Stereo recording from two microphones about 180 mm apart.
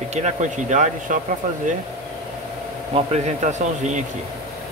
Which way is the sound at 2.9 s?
40° right (ahead or behind).